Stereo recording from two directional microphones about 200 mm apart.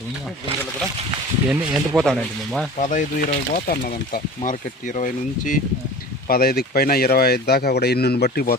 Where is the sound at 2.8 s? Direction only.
40° left (ahead or behind).